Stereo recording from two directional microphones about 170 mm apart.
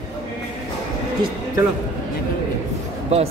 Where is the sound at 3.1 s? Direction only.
40° right (ahead or behind).